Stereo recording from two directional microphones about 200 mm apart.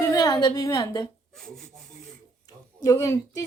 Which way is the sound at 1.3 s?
Centre (ahead or behind).